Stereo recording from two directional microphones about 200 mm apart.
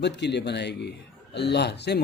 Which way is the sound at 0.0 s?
60° left (ahead or behind).